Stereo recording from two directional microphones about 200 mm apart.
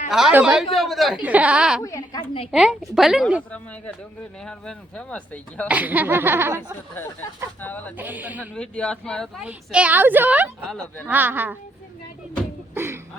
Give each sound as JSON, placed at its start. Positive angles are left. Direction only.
{"t": 0.1, "sound": "a woman's voice", "side_deg": -5}
{"t": 1.8, "sound": "a woman's voice", "side_deg": 20}
{"t": 2.5, "sound": "a woman's voice", "side_deg": 0}
{"t": 5.6, "sound": "speech", "side_deg": -10}
{"t": 6.6, "sound": "speech", "side_deg": 10}
{"t": 7.9, "sound": "speech", "side_deg": -10}
{"t": 8.5, "sound": "a woman's voice", "side_deg": 5}
{"t": 10.6, "sound": "a woman's voice", "side_deg": 5}
{"t": 11.0, "sound": "speech", "side_deg": -10}
{"t": 12.7, "sound": "speech", "side_deg": -10}